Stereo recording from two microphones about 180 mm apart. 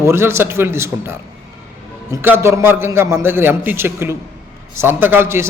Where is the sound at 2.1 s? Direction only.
15° right (ahead or behind).